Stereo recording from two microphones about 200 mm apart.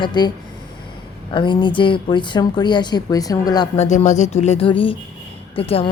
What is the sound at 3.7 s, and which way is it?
Speech, 35° left (ahead or behind).